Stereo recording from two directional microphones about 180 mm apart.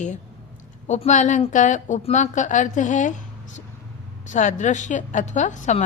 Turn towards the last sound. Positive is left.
turn(degrees=45)  # may be behind; listen again after turning